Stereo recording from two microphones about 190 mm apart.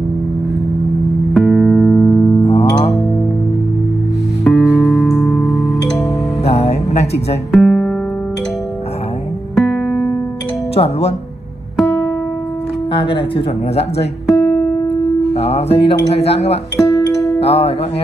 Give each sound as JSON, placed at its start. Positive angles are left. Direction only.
{"t": 1.3, "sound": "music", "side_deg": 0}
{"t": 2.4, "sound": "music", "side_deg": 30}
{"t": 4.5, "sound": "music", "side_deg": 0}
{"t": 6.4, "sound": "music", "side_deg": 30}
{"t": 7.5, "sound": "music", "side_deg": 5}
{"t": 9.6, "sound": "music", "side_deg": 0}
{"t": 10.7, "sound": "speech", "side_deg": 30}
{"t": 12.9, "sound": "speech", "side_deg": 25}
{"t": 15.0, "sound": "speech", "side_deg": 30}